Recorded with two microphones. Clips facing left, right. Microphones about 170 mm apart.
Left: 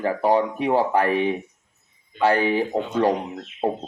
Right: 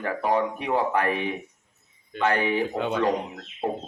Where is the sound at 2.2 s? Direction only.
30° left (ahead or behind).